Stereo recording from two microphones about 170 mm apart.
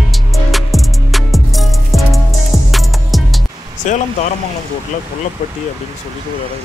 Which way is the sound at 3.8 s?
45° left (ahead or behind).